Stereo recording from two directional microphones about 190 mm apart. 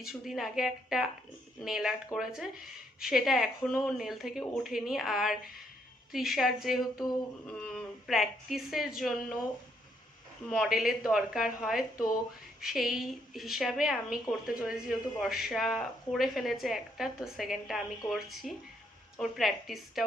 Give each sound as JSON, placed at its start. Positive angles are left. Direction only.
{"t": 0.1, "sound": "speech", "side_deg": 0}
{"t": 6.9, "sound": "a sound", "side_deg": 20}
{"t": 7.4, "sound": "speech", "side_deg": 5}
{"t": 10.5, "sound": "speech", "side_deg": 0}